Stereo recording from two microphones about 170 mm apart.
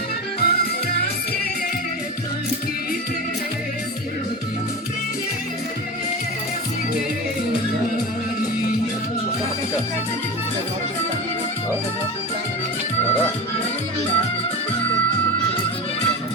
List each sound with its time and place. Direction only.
0.3 s music: 70° left (ahead or behind)